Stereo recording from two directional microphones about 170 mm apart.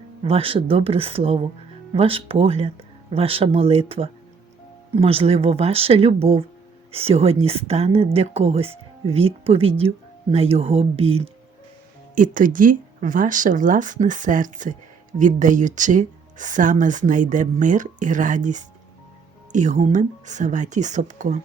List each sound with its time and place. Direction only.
0.3 s speech: 35° right (ahead or behind)
12.1 s speech: 50° right (ahead or behind)